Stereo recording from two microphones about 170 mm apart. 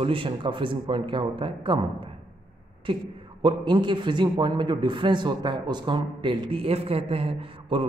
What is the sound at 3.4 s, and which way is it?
A man's voice, 25° right (ahead or behind).